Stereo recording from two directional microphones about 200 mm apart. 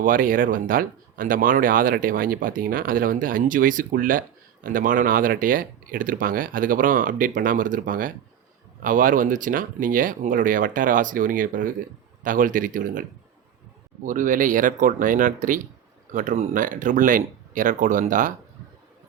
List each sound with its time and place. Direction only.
0.0 s speech: 45° right (ahead or behind)